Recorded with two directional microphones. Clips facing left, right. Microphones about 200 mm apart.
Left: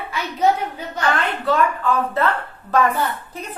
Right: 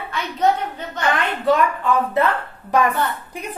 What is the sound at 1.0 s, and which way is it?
Speech, 15° right (ahead or behind).